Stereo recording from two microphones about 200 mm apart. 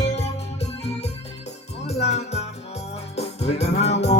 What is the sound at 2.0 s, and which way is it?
Music, 35° left (ahead or behind).